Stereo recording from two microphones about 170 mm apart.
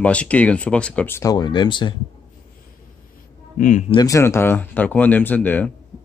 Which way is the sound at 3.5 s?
50° left (ahead or behind).